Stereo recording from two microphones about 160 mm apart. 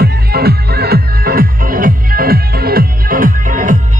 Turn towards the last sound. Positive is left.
turn(degrees=-55)  # may be behind; listen again after turning